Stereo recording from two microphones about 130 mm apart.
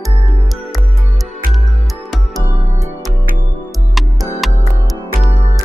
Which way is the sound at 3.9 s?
Centre (ahead or behind).